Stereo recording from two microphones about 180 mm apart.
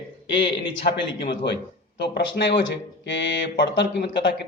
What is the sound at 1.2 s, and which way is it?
Speech, 70° left (ahead or behind).